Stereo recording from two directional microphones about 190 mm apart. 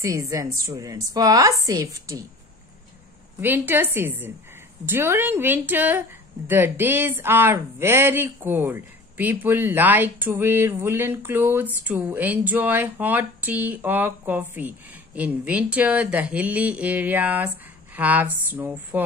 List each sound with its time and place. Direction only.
0.0 s speech: 15° right (ahead or behind)
3.3 s speech: 10° right (ahead or behind)